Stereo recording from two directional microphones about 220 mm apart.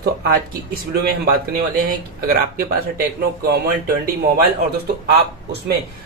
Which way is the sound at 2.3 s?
40° right (ahead or behind).